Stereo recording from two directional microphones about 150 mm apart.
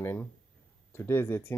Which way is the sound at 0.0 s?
15° left (ahead or behind).